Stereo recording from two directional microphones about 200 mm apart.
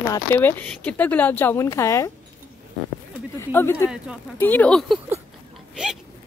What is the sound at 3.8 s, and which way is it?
Speech, 5° right (ahead or behind).